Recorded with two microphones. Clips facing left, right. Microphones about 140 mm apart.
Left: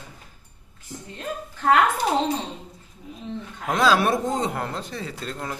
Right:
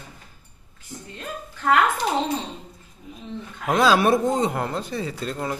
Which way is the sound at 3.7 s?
5° right (ahead or behind).